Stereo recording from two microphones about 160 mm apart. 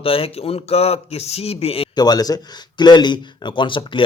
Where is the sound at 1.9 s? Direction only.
25° left (ahead or behind).